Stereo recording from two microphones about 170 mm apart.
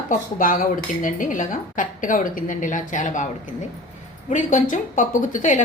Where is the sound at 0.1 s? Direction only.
50° left (ahead or behind).